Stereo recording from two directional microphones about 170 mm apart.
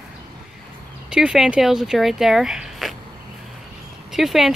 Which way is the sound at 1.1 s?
5° right (ahead or behind).